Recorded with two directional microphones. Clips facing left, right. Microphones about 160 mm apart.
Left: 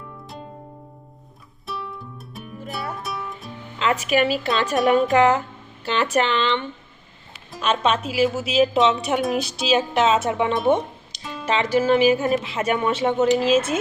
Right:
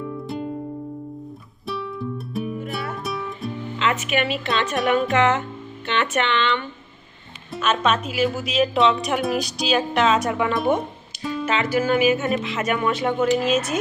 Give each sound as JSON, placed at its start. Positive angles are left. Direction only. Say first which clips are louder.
{"t": 1.6, "sound": "music", "louder": "right 5 dB", "side_deg": 0}
{"t": 3.8, "sound": "a woman's voice", "louder": "left 3 dB", "side_deg": 35}
{"t": 9.2, "sound": "speech", "louder": "even", "side_deg": 0}
{"t": 9.5, "sound": "a woman's voice", "louder": "left 1 dB", "side_deg": 25}
{"t": 10.8, "sound": "music", "louder": "even", "side_deg": -5}
{"t": 11.4, "sound": "speech", "louder": "left 3 dB", "side_deg": 30}